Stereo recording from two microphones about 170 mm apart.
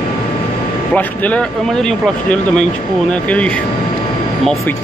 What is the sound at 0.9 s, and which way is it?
Speech, 10° left (ahead or behind).